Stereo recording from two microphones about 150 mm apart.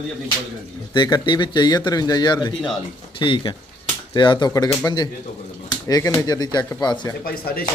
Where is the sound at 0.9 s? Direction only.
30° left (ahead or behind).